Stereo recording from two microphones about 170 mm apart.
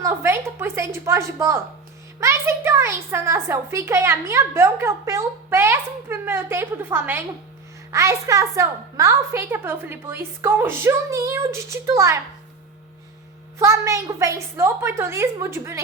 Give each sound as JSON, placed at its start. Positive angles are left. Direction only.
{"t": 0.0, "sound": "a sound", "side_deg": -15}
{"t": 1.0, "sound": "a child's voice", "side_deg": -15}
{"t": 13.6, "sound": "a child's voice", "side_deg": -20}